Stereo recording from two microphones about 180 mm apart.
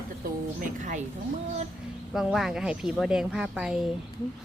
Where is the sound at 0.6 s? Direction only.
45° right (ahead or behind).